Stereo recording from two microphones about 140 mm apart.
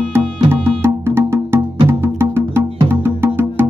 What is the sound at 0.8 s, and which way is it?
Music, 15° right (ahead or behind).